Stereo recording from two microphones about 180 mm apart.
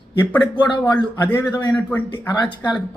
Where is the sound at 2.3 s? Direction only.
25° left (ahead or behind).